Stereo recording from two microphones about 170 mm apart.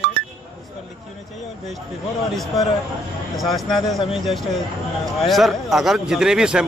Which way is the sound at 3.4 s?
Centre (ahead or behind).